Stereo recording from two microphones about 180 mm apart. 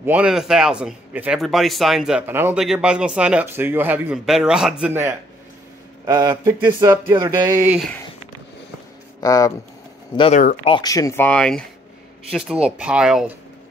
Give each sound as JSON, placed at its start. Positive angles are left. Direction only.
{"t": 0.0, "sound": "speech", "side_deg": -5}
{"t": 6.0, "sound": "speech", "side_deg": -20}
{"t": 9.2, "sound": "speech", "side_deg": 20}